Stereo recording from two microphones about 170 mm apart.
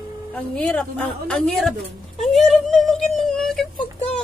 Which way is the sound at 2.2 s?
Centre (ahead or behind).